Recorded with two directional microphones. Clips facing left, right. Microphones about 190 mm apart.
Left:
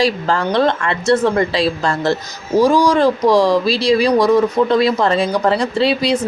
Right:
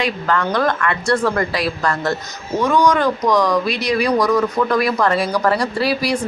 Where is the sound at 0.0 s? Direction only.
30° left (ahead or behind).